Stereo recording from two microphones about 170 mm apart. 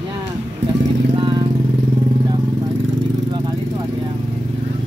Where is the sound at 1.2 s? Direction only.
25° right (ahead or behind).